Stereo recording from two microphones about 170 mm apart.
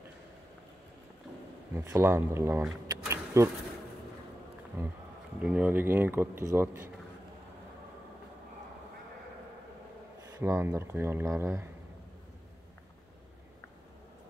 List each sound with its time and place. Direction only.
1.7 s speech: 15° right (ahead or behind)
4.8 s speech: 15° right (ahead or behind)
10.4 s speech: 15° right (ahead or behind)